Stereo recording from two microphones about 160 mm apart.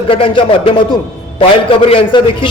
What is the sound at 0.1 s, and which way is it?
Speech, 35° left (ahead or behind).